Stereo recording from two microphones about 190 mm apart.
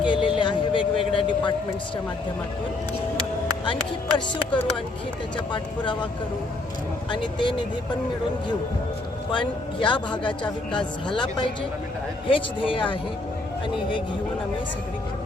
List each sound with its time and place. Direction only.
0.0 s music: 25° left (ahead or behind)
5.5 s a woman's voice: 25° left (ahead or behind)
7.1 s a woman's voice: 25° left (ahead or behind)
9.3 s a woman's voice: 25° left (ahead or behind)